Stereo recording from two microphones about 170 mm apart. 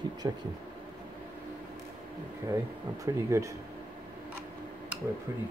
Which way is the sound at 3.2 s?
15° right (ahead or behind).